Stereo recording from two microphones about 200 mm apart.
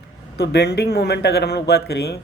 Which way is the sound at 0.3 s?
55° left (ahead or behind).